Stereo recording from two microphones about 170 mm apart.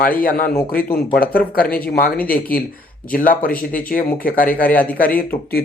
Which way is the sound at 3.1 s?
55° left (ahead or behind).